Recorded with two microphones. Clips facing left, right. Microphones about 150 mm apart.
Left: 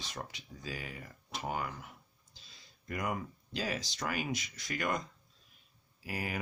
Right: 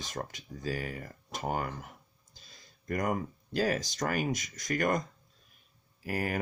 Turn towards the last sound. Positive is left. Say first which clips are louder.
# right 6 dB
turn(degrees=-50)  # may be behind; listen again after turning